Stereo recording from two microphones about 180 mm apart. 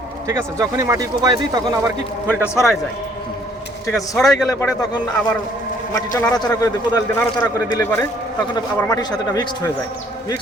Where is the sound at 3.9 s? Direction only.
Centre (ahead or behind).